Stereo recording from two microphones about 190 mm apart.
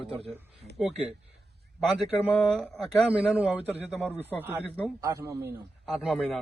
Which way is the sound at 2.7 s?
5° right (ahead or behind).